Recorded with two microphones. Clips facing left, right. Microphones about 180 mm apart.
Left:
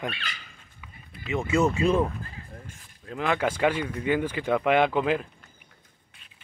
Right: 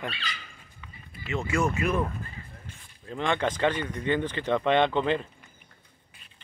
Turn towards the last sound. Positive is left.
turn(degrees=0)  # may be behind; listen again after turning